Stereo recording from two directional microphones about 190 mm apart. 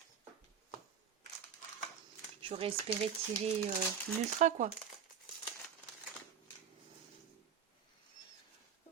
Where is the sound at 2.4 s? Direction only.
30° right (ahead or behind).